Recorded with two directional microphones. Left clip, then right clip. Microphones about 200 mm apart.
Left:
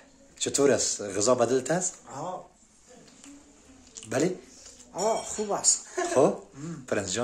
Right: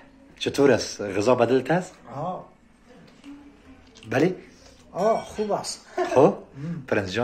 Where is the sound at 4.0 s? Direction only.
15° left (ahead or behind).